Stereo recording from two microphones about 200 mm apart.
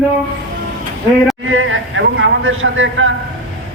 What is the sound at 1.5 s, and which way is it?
A man's voice, 80° right.